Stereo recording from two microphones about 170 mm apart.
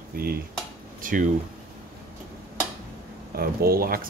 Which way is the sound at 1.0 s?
50° right (ahead or behind).